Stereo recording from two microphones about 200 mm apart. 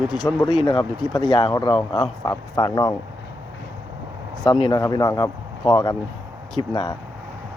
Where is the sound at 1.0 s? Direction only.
Centre (ahead or behind).